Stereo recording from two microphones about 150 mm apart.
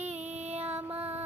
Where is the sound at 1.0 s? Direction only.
40° right (ahead or behind).